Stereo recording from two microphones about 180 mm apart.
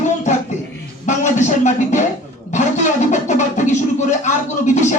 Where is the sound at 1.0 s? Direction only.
45° left (ahead or behind).